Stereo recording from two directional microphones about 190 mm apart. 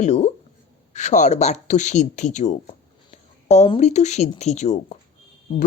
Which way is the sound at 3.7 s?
35° left (ahead or behind).